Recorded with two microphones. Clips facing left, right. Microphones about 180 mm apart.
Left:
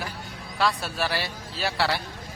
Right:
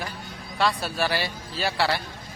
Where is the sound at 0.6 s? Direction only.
Centre (ahead or behind).